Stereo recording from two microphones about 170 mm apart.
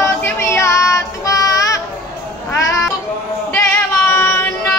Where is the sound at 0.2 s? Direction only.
15° left (ahead or behind).